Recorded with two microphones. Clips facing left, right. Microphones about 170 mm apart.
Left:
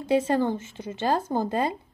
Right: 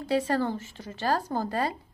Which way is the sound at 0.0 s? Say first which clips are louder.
Left 3 dB; 20° left (ahead or behind).